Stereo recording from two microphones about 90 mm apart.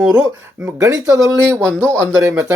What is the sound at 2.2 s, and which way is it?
Speech, 35° right (ahead or behind).